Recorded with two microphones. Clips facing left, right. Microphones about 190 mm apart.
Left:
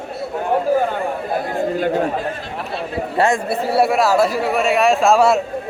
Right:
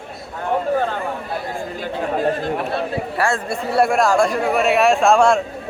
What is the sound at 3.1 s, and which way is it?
Speech, 20° left (ahead or behind).